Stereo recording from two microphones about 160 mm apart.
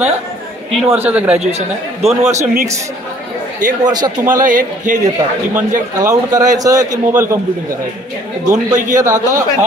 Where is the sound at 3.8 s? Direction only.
25° right (ahead or behind).